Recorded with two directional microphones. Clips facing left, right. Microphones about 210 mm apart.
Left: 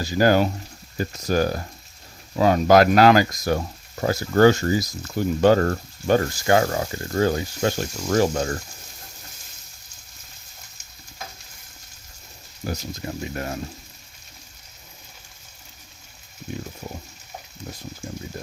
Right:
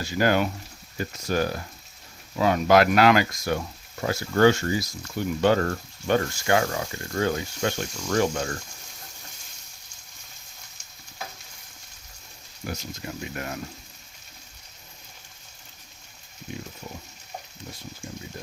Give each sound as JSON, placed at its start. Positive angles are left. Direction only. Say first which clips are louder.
{"t": 0.0, "sound": "speech", "louder": "left 4 dB", "side_deg": 35}
{"t": 12.6, "sound": "speech", "louder": "left 4 dB", "side_deg": 35}